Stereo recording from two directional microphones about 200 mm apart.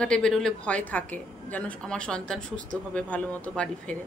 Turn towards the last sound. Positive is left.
turn(degrees=5)  # may be behind; listen again after turning